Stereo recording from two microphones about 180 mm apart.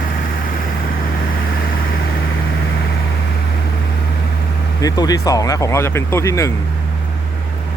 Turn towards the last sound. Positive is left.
turn(degrees=15)  # may be behind; listen again after turning